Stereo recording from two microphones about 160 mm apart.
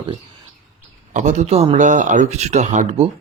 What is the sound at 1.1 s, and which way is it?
Speech, 50° right (ahead or behind).